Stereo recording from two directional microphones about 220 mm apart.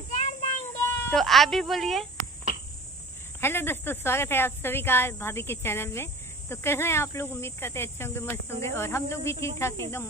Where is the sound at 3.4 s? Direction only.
10° left (ahead or behind).